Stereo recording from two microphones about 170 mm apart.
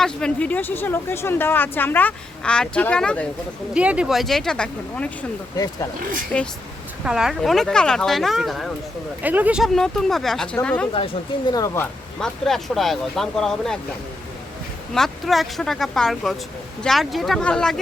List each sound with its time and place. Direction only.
0.0 s speech: 5° left (ahead or behind)
3.8 s speech: 5° right (ahead or behind)
5.5 s speech: 20° left (ahead or behind)
6.3 s speech: 5° left (ahead or behind)
7.0 s speech: 5° right (ahead or behind); by 11.9 s 15° left (ahead or behind)
12.2 s speech: centre (ahead or behind)
14.9 s speech: centre (ahead or behind)